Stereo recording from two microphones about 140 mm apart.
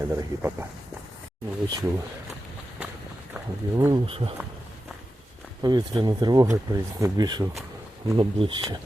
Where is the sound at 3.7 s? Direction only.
25° right (ahead or behind).